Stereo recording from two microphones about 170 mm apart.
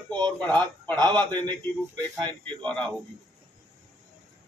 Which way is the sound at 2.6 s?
5° left (ahead or behind).